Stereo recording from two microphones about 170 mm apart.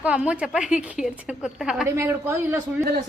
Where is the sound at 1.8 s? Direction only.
15° right (ahead or behind).